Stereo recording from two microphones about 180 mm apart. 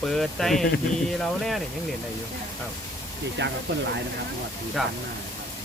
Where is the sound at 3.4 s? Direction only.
75° right (ahead or behind).